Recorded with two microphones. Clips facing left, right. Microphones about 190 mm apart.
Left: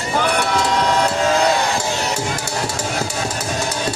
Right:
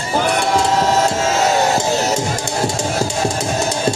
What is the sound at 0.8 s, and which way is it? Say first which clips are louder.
Music: right 2 dB; 40° right (ahead or behind).